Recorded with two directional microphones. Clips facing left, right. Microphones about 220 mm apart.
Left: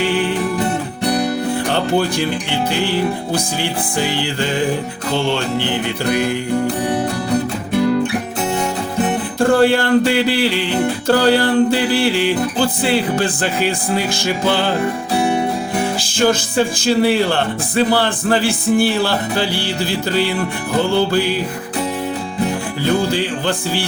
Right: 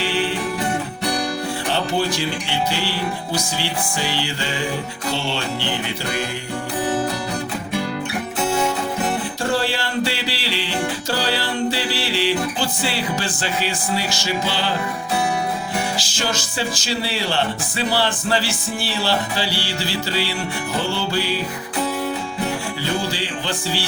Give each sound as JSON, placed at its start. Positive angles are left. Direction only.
{"t": 1.7, "sound": "music", "side_deg": 50}
{"t": 3.3, "sound": "music", "side_deg": 50}
{"t": 9.4, "sound": "music", "side_deg": 55}
{"t": 16.0, "sound": "music", "side_deg": 55}
{"t": 23.1, "sound": "music", "side_deg": 55}